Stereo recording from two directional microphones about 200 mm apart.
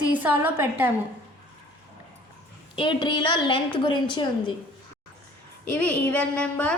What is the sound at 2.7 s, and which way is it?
A woman's voice, 25° left (ahead or behind).